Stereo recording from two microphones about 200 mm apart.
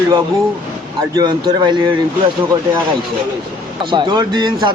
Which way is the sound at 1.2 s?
20° right (ahead or behind).